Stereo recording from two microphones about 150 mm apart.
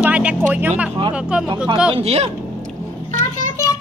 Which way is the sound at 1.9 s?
40° right (ahead or behind).